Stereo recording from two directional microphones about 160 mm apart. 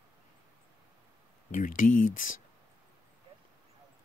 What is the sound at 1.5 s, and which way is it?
Speech, 55° left (ahead or behind).